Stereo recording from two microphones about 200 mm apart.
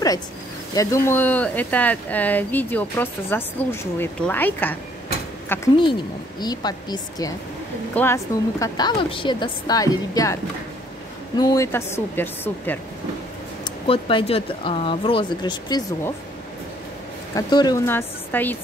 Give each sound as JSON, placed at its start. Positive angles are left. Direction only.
{"t": 0.7, "sound": "a woman's voice", "side_deg": 15}
{"t": 11.3, "sound": "speech", "side_deg": 20}
{"t": 13.8, "sound": "a woman's voice", "side_deg": 25}
{"t": 17.4, "sound": "speech", "side_deg": 20}